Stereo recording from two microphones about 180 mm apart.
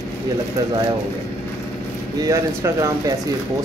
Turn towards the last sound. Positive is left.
turn(degrees=-15)  # may be behind; listen again after turning